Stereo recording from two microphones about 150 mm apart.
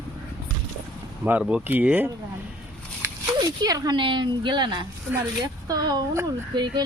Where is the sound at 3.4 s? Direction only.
25° right (ahead or behind).